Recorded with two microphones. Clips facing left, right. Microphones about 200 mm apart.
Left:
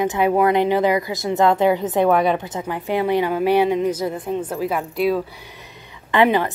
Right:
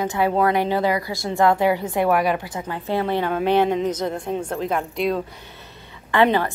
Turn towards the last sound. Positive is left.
turn(degrees=15)  # may be behind; listen again after turning